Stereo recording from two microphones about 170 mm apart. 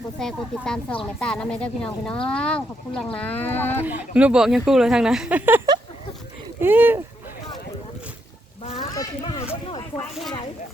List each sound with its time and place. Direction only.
0.2 s speech: 5° left (ahead or behind)
3.8 s speech: 10° right (ahead or behind)
8.6 s a sound: 35° left (ahead or behind)
9.6 s speech: 25° left (ahead or behind)